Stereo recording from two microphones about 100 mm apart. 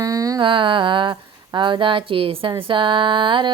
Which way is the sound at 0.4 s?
55° right (ahead or behind).